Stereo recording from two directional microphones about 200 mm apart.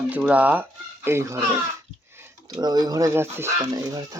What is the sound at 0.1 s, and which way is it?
Speech, 5° right (ahead or behind).